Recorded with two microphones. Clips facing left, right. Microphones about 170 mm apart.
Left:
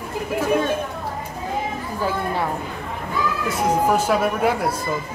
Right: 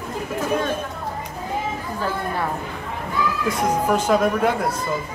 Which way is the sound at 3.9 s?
5° left (ahead or behind).